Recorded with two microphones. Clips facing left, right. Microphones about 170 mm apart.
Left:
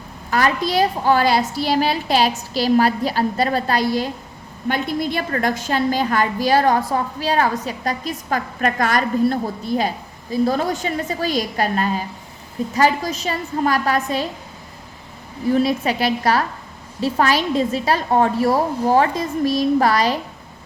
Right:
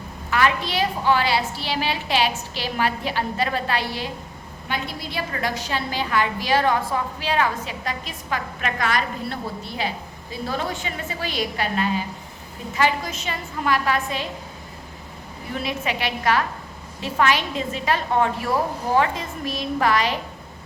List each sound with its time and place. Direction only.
0.3 s a woman's voice: 40° left (ahead or behind)
15.5 s a woman's voice: 35° left (ahead or behind)